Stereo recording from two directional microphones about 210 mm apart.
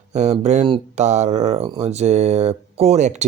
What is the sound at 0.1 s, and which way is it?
Speech, 30° right (ahead or behind).